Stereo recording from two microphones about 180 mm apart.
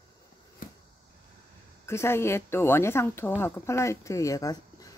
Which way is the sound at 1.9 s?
15° left (ahead or behind).